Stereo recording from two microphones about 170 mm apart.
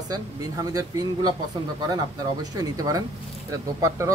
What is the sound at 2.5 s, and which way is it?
A man's voice, 20° right (ahead or behind).